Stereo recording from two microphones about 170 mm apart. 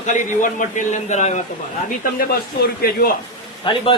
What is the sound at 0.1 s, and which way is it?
A man's voice, 50° left (ahead or behind).